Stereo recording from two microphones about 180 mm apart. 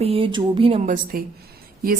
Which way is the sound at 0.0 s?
30° right (ahead or behind).